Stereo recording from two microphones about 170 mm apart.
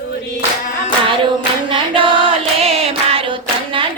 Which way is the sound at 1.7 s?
30° right (ahead or behind).